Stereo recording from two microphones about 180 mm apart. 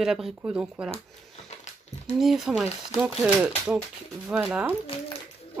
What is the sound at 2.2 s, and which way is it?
Speech, centre (ahead or behind).